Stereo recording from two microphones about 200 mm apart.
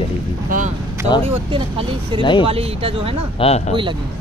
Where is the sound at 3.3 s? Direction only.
30° left (ahead or behind).